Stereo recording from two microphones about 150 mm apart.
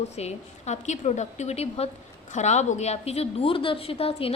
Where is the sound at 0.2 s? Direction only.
45° left (ahead or behind).